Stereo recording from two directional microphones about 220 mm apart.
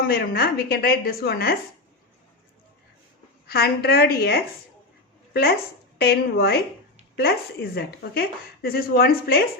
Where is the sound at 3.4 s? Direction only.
45° left (ahead or behind).